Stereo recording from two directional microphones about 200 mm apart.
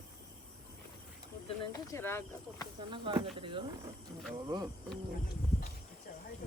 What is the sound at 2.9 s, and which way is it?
Speech, 25° right (ahead or behind).